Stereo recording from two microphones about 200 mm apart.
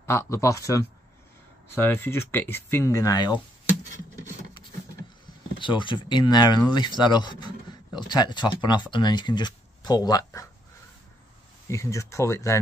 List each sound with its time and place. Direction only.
0.0 s speech: 10° left (ahead or behind)
5.6 s speech: 25° left (ahead or behind)
11.6 s speech: 15° left (ahead or behind)